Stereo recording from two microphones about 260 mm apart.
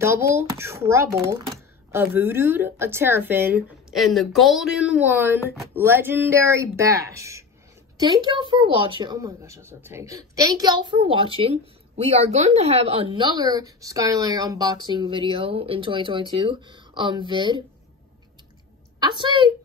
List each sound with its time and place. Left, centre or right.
0.0 s a woman's voice: centre
18.9 s a woman's voice: centre